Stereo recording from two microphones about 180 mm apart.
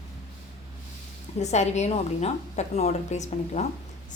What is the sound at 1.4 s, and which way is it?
A woman's voice, 40° left (ahead or behind).